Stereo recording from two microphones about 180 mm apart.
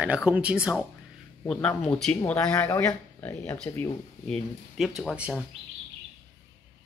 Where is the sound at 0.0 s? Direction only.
5° right (ahead or behind).